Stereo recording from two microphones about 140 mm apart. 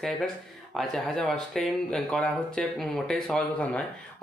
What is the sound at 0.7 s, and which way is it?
Speech, centre (ahead or behind).